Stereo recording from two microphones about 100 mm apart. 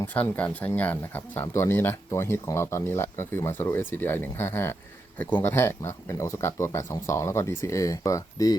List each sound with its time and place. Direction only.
0.0 s speech: 15° left (ahead or behind); by 8.5 s 35° left (ahead or behind)